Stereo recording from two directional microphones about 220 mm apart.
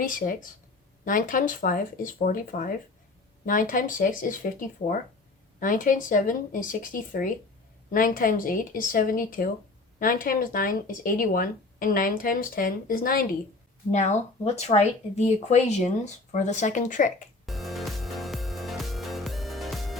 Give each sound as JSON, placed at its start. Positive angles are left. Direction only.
{"t": 0.0, "sound": "speech", "side_deg": 40}
{"t": 5.5, "sound": "speech", "side_deg": 35}
{"t": 17.4, "sound": "music", "side_deg": 0}